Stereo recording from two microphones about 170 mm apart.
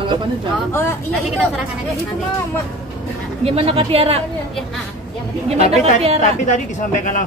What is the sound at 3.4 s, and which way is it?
Speech, 35° right (ahead or behind).